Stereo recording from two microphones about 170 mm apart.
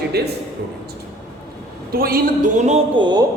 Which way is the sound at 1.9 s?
60° right (ahead or behind).